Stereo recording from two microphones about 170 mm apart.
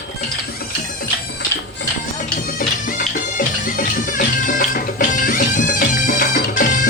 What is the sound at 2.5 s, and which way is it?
Music, 55° left (ahead or behind).